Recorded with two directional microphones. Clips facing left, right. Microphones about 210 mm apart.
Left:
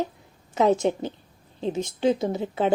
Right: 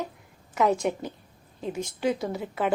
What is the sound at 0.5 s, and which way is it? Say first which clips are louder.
A woman's voice: left 3 dB; 25° left (ahead or behind).